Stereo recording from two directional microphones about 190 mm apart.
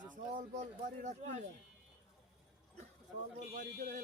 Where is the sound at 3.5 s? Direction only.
40° right (ahead or behind).